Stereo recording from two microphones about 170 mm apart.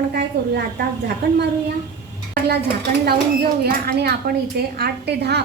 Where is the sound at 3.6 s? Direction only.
70° right (ahead or behind).